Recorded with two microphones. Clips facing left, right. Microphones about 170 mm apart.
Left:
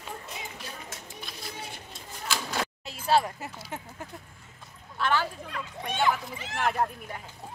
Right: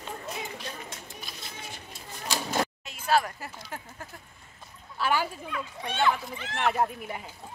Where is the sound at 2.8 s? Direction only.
30° left (ahead or behind).